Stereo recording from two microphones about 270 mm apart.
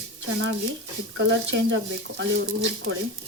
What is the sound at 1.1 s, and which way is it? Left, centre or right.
Speech, right.